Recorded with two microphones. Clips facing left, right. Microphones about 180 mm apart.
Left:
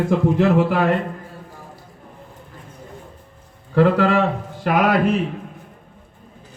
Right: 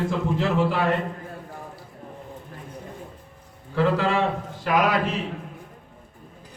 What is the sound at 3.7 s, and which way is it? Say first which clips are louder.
Speech: left 6 dB; 55° left (ahead or behind).